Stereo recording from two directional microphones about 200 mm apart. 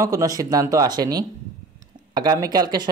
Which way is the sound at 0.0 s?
15° right (ahead or behind).